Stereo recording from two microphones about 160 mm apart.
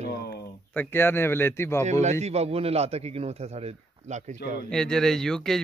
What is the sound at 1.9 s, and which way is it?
A man's voice, 45° right (ahead or behind).